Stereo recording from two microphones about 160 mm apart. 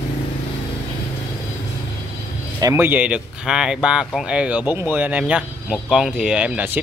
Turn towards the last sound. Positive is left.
turn(degrees=-10)  # may be behind; listen again after turning